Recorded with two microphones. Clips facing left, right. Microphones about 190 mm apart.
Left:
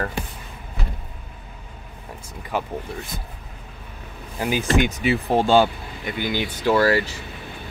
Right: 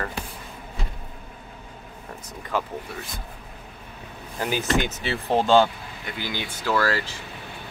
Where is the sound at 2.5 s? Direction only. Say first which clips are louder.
Left 1 dB; 20° left (ahead or behind).